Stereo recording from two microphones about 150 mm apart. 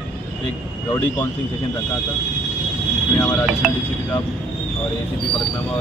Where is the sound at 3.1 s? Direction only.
15° left (ahead or behind).